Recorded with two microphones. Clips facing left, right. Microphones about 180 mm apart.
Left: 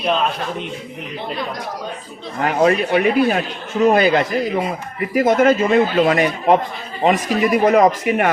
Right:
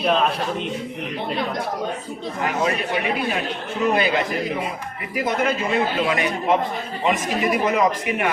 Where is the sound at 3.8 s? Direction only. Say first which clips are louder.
Left 6 dB; 40° left (ahead or behind).